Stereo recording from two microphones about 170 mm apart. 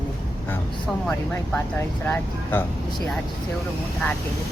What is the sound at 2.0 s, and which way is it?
Speech, 10° left (ahead or behind).